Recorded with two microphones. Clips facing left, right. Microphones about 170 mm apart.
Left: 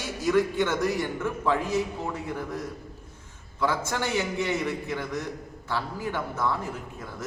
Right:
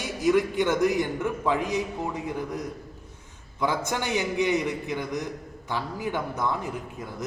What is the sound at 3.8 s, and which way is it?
A man's voice, 15° right (ahead or behind).